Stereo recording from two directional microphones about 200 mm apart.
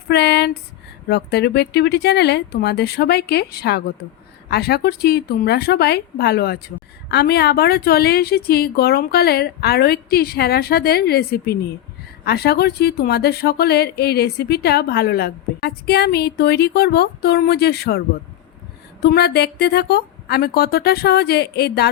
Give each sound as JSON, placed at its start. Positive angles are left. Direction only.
{"t": 0.1, "sound": "a sound", "side_deg": 55}
{"t": 1.0, "sound": "speech", "side_deg": 55}
{"t": 19.0, "sound": "speech", "side_deg": 55}